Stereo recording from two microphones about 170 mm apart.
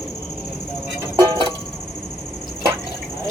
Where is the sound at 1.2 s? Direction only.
25° right (ahead or behind).